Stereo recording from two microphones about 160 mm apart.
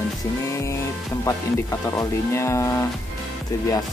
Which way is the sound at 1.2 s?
20° left (ahead or behind).